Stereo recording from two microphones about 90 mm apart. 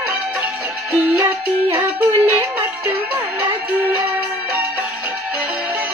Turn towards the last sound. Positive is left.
turn(degrees=-15)  # may be behind; listen again after turning